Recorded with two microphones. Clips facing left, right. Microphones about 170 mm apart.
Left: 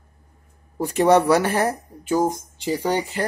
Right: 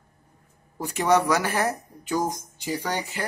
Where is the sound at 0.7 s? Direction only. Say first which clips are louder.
Left 5 dB; 30° left (ahead or behind).